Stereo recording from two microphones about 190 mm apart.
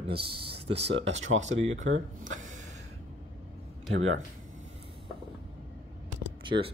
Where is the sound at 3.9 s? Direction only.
90° right.